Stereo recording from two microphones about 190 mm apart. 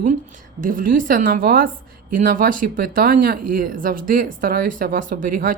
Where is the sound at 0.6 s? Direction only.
45° right (ahead or behind).